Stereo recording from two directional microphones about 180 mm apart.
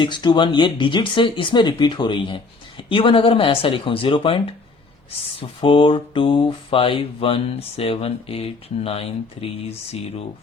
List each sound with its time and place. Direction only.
0.0 s speech: 25° left (ahead or behind)
5.4 s mantra: 30° left (ahead or behind)